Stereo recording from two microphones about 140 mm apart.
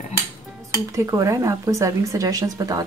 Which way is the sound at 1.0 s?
25° right (ahead or behind).